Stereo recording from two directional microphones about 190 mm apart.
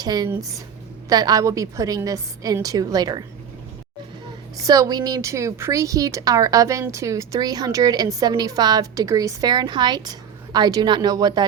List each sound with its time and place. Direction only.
0.0 s a woman's voice: 20° right (ahead or behind)
4.5 s a woman's voice: 20° right (ahead or behind)